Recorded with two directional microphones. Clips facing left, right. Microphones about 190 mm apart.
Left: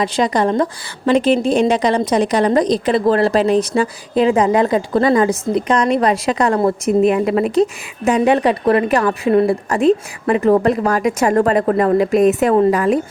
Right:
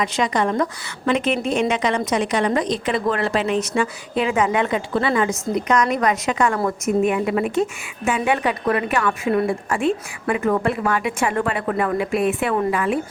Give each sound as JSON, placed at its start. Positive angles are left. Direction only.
{"t": 0.0, "sound": "a woman's voice", "side_deg": 35}